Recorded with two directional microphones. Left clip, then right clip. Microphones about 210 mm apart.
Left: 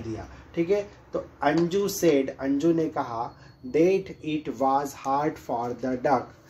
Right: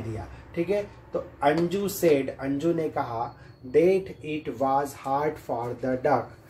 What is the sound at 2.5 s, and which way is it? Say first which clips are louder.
Speech: left 2 dB; 35° left (ahead or behind).